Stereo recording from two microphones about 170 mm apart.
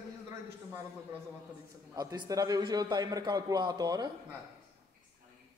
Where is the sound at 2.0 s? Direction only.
20° right (ahead or behind).